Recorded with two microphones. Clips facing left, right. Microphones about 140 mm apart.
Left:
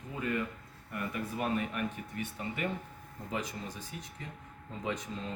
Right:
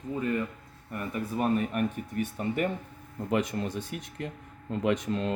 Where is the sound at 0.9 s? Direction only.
40° right (ahead or behind).